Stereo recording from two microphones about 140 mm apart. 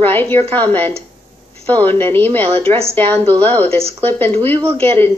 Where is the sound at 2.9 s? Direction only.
15° left (ahead or behind).